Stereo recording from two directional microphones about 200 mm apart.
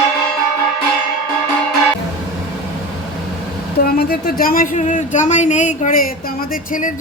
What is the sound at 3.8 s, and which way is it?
A woman's voice, 50° left (ahead or behind).